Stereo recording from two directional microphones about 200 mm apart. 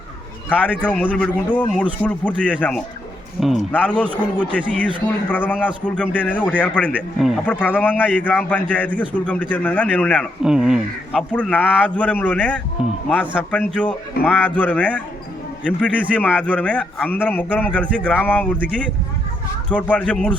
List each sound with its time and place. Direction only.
0.8 s a man's voice: 5° left (ahead or behind)
10.4 s a man's voice: 5° right (ahead or behind)
14.2 s a man's voice: 50° left (ahead or behind)
14.5 s a man's voice: 5° left (ahead or behind)
19.7 s speech: 5° left (ahead or behind)